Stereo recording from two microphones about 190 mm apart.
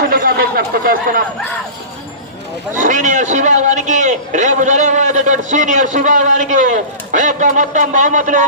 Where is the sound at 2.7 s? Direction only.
40° right (ahead or behind).